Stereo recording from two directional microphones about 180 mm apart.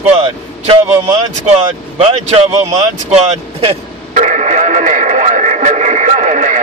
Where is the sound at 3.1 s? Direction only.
35° right (ahead or behind).